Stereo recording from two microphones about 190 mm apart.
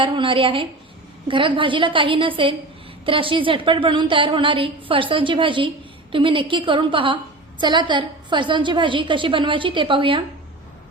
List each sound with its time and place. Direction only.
0.0 s a woman's voice: 25° right (ahead or behind)